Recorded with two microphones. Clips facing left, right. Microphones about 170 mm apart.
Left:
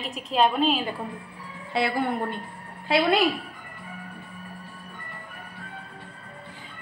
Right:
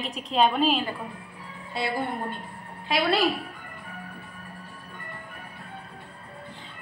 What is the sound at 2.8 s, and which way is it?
Speech, 20° left (ahead or behind).